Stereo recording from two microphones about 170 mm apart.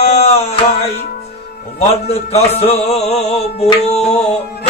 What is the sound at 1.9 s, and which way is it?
Music, 40° left (ahead or behind).